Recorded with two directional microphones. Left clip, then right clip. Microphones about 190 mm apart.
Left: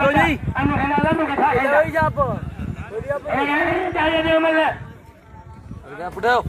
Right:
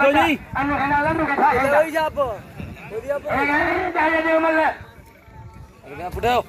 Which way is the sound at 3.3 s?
25° left (ahead or behind).